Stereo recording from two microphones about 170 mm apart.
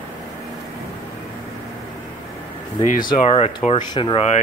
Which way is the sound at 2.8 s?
50° left (ahead or behind).